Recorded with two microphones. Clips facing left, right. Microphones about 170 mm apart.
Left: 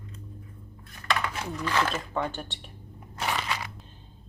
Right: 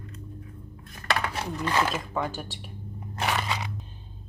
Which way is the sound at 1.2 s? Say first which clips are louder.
Right 2 dB; 40° right (ahead or behind).